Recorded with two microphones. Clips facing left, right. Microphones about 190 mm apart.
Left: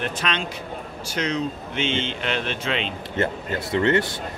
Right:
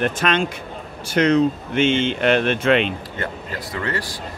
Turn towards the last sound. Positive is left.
turn(degrees=25)  # may be behind; listen again after turning